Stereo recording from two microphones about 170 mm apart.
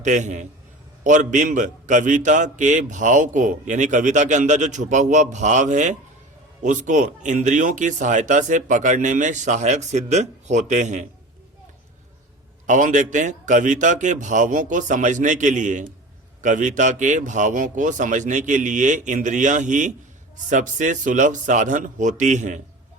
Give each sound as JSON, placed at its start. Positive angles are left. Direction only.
{"t": 0.0, "sound": "a man's voice", "side_deg": -45}
{"t": 12.6, "sound": "a man's voice", "side_deg": -45}